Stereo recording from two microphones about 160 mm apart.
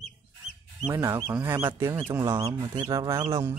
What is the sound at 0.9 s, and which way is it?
Speech, 15° right (ahead or behind).